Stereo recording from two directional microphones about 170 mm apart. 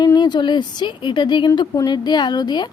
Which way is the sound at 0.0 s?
25° left (ahead or behind).